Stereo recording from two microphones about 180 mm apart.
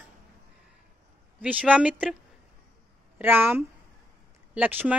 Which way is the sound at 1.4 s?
5° right (ahead or behind).